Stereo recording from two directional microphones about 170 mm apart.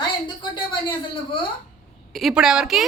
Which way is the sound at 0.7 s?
30° left (ahead or behind).